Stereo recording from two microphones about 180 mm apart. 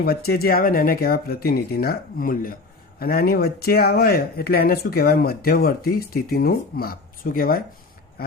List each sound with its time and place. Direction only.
0.0 s speech: 55° left (ahead or behind)